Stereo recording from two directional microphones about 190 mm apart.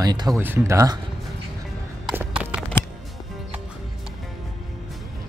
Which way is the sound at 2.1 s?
10° right (ahead or behind).